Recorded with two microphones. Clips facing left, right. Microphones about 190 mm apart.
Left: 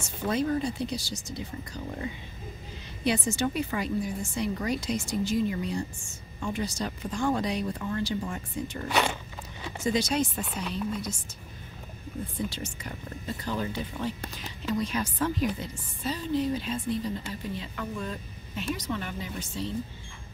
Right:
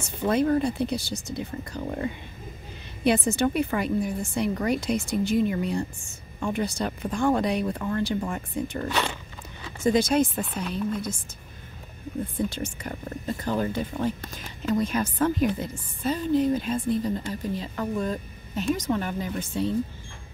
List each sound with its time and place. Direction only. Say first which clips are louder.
0.0 s a woman's voice: right 5 dB; 60° right (ahead or behind)
9.8 s speech: right 6 dB; 50° right (ahead or behind)
12.4 s speech: right 4 dB; 55° right (ahead or behind)